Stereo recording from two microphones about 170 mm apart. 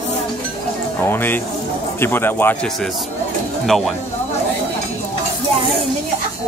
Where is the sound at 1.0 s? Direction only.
10° left (ahead or behind).